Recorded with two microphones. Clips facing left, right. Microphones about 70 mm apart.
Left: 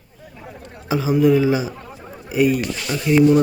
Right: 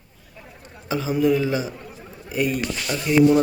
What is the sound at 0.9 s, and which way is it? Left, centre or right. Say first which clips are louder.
A man's voice: left 4 dB; centre.